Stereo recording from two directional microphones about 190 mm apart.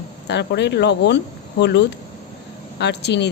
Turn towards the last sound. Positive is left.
turn(degrees=65)  # may be behind; listen again after turning